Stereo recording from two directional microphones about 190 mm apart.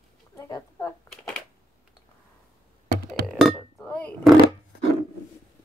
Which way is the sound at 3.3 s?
Centre (ahead or behind).